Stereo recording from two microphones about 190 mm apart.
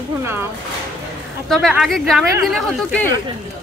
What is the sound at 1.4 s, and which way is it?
A woman's voice, centre (ahead or behind).